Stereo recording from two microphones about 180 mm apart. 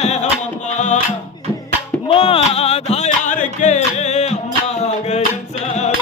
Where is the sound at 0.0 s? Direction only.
40° left (ahead or behind).